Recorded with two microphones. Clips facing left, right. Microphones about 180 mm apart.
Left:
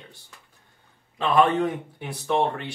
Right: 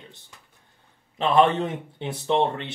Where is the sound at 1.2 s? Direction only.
25° right (ahead or behind).